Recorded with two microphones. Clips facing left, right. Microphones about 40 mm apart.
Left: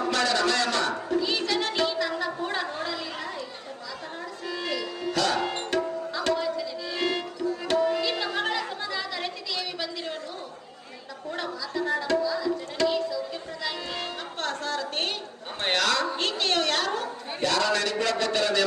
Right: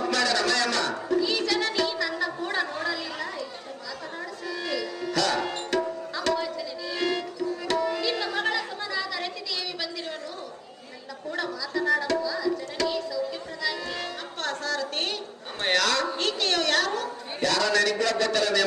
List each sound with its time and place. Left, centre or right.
0.0 s music: left
2.1 s a sound: centre
4.4 s music: left
6.8 s tabla: left
11.3 s music: left
12.2 s tabla: left
14.4 s a sound: left
15.6 s bow-wow: left
16.1 s a sound: left